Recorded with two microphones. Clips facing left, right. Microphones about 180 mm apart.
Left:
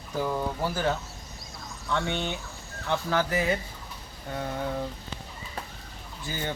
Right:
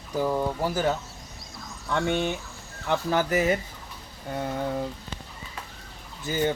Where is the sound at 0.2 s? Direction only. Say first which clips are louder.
Right 3 dB; 15° right (ahead or behind).